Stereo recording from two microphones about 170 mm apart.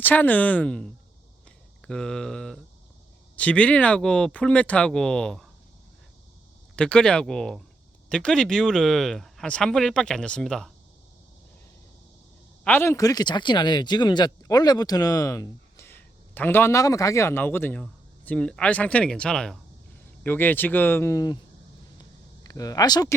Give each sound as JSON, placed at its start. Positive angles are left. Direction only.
{"t": 0.0, "sound": "speech", "side_deg": 10}
{"t": 6.7, "sound": "speech", "side_deg": 5}
{"t": 12.6, "sound": "speech", "side_deg": 15}
{"t": 22.4, "sound": "speech", "side_deg": 20}